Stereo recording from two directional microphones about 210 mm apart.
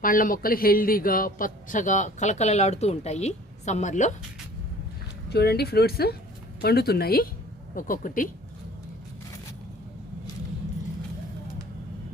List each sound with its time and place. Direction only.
0.0 s a man's voice: 40° left (ahead or behind)
5.3 s a man's voice: 50° left (ahead or behind)